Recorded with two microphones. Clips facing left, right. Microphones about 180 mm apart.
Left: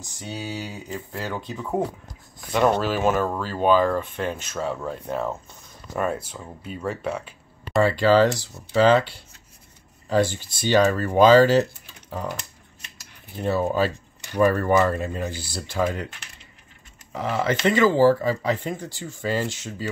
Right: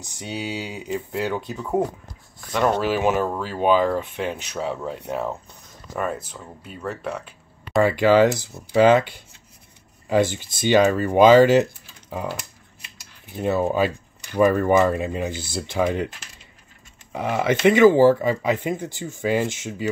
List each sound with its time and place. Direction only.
0.0 s speech: 20° right (ahead or behind)
1.6 s speech: centre (ahead or behind)
2.8 s speech: 15° right (ahead or behind)
5.9 s speech: 5° left (ahead or behind)
7.8 s speech: 15° right (ahead or behind)
13.3 s speech: 15° right (ahead or behind)
17.1 s speech: 15° right (ahead or behind)